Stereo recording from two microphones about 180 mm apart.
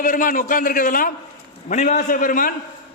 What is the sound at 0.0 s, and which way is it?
A man's voice, 50° left (ahead or behind).